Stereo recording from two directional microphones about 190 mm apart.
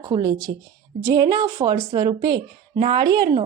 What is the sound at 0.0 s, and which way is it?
Speech, 20° right (ahead or behind).